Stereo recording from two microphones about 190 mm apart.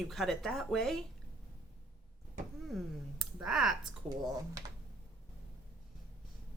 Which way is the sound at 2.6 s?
Centre (ahead or behind).